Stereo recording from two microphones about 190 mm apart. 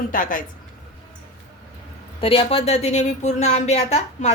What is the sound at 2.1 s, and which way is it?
Speech, 30° left (ahead or behind).